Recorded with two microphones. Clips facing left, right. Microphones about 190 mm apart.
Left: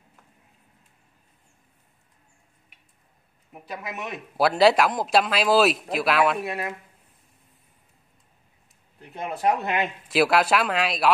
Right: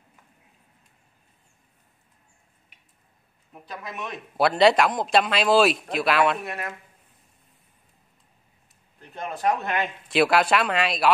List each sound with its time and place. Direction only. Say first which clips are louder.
3.5 s speech: left 2 dB; 10° left (ahead or behind)
9.4 s speech: left 1 dB; 20° left (ahead or behind)
10.0 s speech: even; 5° left (ahead or behind)